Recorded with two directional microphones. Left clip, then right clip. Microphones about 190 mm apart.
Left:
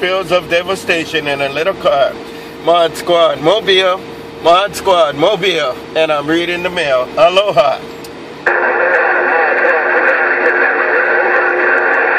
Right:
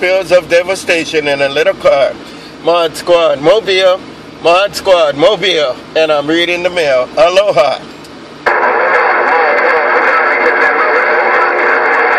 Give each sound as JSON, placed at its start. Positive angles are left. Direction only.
{"t": 0.1, "sound": "speech", "side_deg": -35}
{"t": 8.5, "sound": "radio", "side_deg": -40}